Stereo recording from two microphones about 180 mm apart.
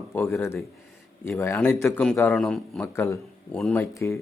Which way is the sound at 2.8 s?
15° left (ahead or behind).